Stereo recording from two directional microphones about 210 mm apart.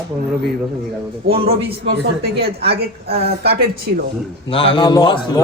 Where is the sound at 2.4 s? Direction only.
25° right (ahead or behind).